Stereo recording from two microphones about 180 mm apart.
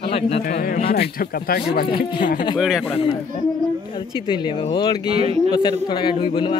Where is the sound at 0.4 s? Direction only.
55° left (ahead or behind).